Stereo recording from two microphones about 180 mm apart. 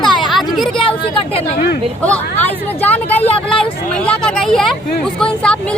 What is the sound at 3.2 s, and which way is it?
Vehicle, 35° left (ahead or behind).